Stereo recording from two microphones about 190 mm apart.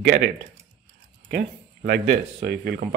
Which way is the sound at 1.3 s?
55° right (ahead or behind).